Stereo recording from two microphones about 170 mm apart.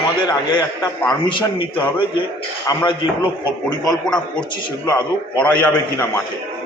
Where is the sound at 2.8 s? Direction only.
30° left (ahead or behind).